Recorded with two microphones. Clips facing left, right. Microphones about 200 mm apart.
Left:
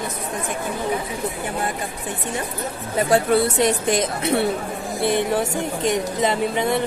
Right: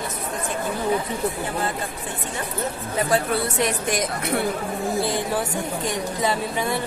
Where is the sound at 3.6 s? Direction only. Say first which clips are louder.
Left 4 dB; 25° left (ahead or behind).